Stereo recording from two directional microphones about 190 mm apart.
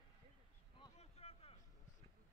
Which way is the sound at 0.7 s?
30° left (ahead or behind).